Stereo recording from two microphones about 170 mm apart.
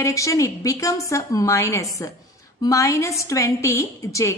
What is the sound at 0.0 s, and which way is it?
A woman's voice, 20° left (ahead or behind).